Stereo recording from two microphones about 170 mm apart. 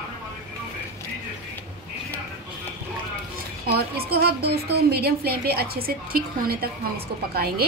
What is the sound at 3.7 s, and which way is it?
A woman's voice, 65° right (ahead or behind).